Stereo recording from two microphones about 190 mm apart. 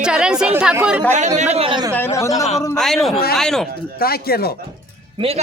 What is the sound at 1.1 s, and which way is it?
Speech, 35° right (ahead or behind).